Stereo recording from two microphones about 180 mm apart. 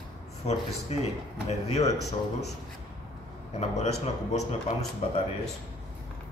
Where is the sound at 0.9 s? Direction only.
35° left (ahead or behind).